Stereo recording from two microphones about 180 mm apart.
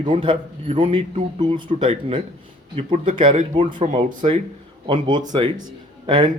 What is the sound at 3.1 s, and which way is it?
Speech, 25° right (ahead or behind).